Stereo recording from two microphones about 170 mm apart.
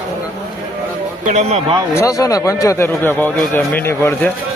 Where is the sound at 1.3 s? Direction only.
45° right (ahead or behind).